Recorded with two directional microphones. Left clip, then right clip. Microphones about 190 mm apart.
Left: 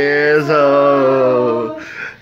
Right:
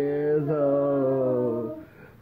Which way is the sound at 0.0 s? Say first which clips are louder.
Left 12 dB; 5° left (ahead or behind).